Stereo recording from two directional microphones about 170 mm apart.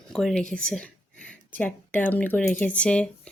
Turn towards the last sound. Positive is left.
turn(degrees=5)  # may be behind; listen again after turning